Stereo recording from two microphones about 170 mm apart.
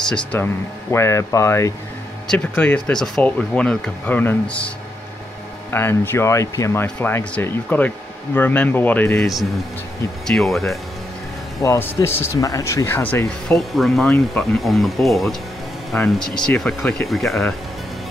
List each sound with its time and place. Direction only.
0.0 s speech: 5° left (ahead or behind)
11.6 s speech: 15° left (ahead or behind)